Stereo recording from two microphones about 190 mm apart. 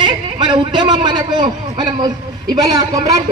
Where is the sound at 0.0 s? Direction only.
25° right (ahead or behind).